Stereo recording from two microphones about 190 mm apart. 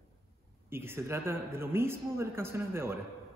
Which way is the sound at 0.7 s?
10° right (ahead or behind).